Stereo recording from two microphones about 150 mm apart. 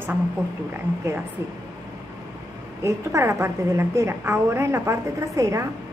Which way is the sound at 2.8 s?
20° right (ahead or behind).